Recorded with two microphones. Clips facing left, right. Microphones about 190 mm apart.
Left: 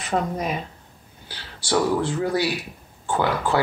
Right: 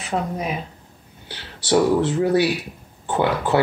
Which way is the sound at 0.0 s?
5° right (ahead or behind).